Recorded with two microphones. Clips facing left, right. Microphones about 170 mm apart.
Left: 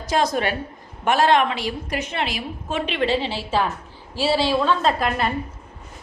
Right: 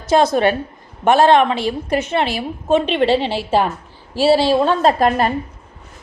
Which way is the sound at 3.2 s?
65° right (ahead or behind).